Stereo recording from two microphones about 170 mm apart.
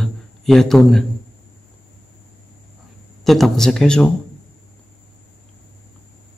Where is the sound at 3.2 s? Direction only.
Centre (ahead or behind).